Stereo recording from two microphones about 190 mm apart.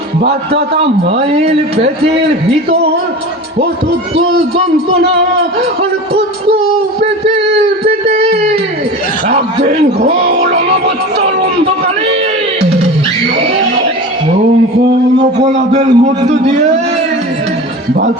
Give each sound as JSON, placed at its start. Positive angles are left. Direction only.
{"t": 1.3, "sound": "a man's voice", "side_deg": -35}
{"t": 8.0, "sound": "a sound", "side_deg": -30}
{"t": 9.3, "sound": "music", "side_deg": -35}
{"t": 15.5, "sound": "a man's voice", "side_deg": -35}